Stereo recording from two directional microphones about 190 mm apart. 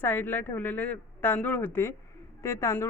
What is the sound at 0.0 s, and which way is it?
Speech, 10° left (ahead or behind).